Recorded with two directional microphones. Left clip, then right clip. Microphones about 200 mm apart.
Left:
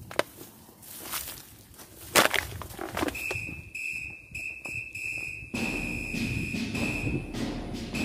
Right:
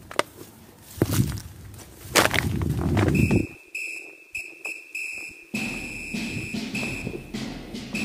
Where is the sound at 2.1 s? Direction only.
5° left (ahead or behind).